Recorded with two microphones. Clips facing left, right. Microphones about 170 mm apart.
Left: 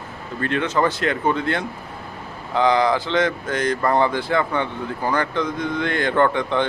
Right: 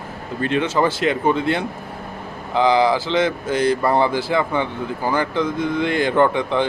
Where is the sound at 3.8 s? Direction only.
5° right (ahead or behind).